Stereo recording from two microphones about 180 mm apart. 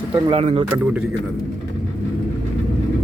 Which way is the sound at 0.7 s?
10° right (ahead or behind).